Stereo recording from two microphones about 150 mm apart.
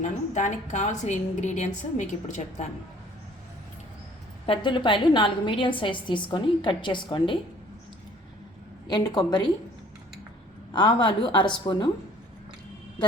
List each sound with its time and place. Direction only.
0.0 s a woman's voice: 55° left (ahead or behind)
4.4 s a woman's voice: 35° left (ahead or behind)
8.9 s a woman's voice: 25° left (ahead or behind)
10.7 s a woman's voice: 30° left (ahead or behind)